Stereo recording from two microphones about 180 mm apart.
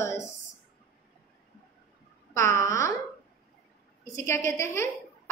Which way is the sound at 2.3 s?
15° left (ahead or behind).